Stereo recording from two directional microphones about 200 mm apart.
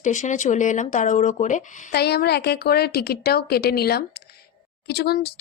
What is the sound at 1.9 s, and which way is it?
A woman's voice, 55° left (ahead or behind).